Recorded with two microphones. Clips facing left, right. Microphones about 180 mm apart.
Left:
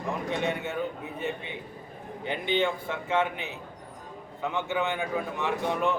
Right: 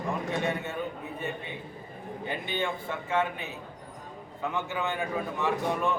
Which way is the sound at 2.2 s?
20° left (ahead or behind).